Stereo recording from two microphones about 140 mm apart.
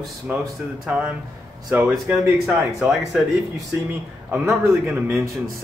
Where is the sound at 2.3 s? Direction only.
5° right (ahead or behind).